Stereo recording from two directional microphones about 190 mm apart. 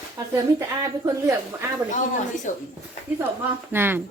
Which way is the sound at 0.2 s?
20° right (ahead or behind).